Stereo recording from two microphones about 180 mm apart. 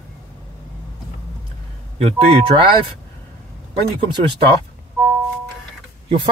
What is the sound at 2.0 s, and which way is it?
Speech, 35° right (ahead or behind).